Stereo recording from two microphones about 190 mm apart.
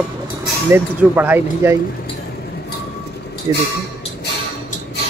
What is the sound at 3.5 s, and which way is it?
Speech, 20° right (ahead or behind).